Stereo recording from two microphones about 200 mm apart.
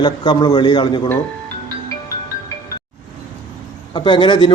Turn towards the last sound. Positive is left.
turn(degrees=25)  # may be behind; listen again after turning